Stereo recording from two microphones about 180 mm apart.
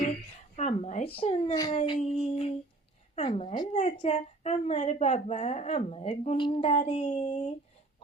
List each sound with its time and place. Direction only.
0.5 s a woman's voice: 40° left (ahead or behind)
3.7 s a woman's voice: 40° left (ahead or behind)
7.3 s speech: 45° left (ahead or behind)